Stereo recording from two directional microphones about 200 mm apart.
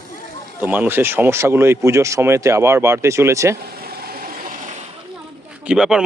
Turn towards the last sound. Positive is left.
turn(degrees=-5)  # may be behind; listen again after turning